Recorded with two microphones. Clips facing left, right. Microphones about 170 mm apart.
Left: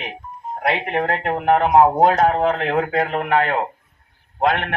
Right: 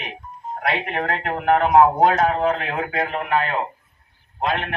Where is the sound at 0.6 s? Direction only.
25° left (ahead or behind).